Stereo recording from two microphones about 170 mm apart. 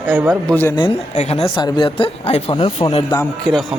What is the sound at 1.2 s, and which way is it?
Speech, 35° left (ahead or behind).